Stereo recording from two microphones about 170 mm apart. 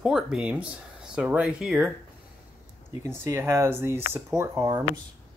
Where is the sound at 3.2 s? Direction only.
15° right (ahead or behind).